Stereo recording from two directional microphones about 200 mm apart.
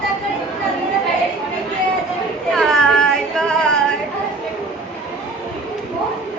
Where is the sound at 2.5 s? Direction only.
5° left (ahead or behind).